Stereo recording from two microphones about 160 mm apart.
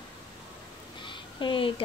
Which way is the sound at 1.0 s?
30° left (ahead or behind).